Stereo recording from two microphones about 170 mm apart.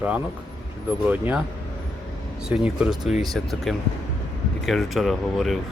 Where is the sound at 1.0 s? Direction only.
10° right (ahead or behind).